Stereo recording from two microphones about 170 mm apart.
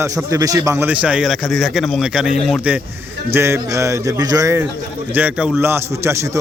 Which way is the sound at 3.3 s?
15° right (ahead or behind).